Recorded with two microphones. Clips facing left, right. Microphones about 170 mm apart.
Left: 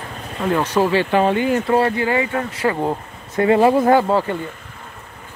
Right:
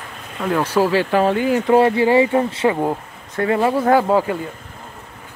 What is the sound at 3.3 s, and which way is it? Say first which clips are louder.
Speech: left 4 dB; 20° left (ahead or behind).